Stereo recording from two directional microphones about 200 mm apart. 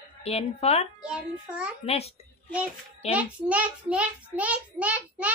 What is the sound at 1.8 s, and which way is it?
Speech, 30° left (ahead or behind).